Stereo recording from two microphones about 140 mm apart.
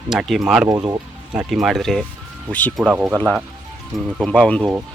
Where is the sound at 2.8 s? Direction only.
5° right (ahead or behind).